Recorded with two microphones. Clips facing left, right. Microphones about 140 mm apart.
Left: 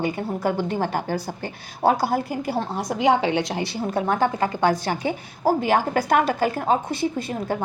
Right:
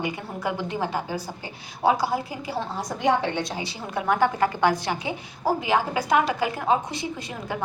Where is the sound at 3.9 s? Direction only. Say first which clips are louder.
Even; 35° left (ahead or behind).